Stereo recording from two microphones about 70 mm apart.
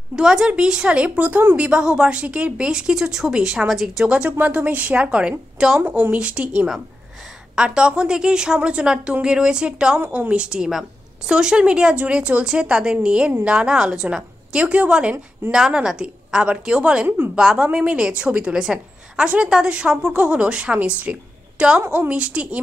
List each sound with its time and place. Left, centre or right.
0.1 s a woman's voice: centre
4.0 s a woman's voice: centre
5.8 s speech: right
6.1 s a woman's voice: centre
9.9 s a woman's voice: right